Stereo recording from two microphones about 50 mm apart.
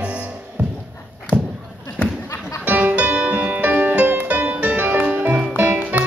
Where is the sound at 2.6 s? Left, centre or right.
Right.